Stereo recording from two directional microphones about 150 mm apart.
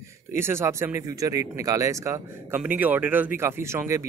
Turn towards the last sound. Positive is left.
turn(degrees=-20)  # may be behind; listen again after turning